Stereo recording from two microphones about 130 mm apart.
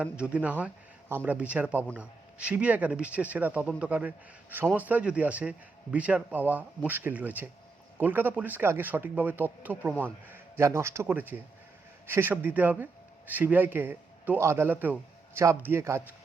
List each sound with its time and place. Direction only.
0.0 s a man's voice: 10° right (ahead or behind)